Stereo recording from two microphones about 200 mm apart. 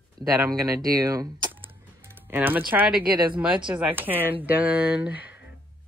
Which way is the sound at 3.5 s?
25° right (ahead or behind).